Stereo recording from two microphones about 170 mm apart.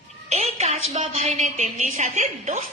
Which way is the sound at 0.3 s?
40° right (ahead or behind).